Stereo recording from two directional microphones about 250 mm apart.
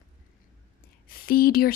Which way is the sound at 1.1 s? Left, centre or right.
Left.